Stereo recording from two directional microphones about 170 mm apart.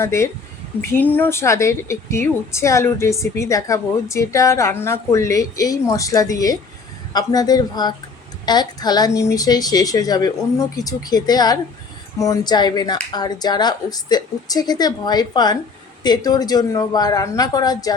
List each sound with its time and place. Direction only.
0.0 s speech: 15° left (ahead or behind)